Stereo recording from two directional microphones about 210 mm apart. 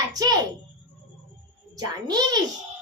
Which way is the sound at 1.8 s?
20° right (ahead or behind).